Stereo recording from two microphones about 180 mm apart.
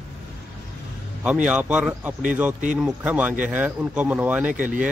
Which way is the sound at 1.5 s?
5° right (ahead or behind).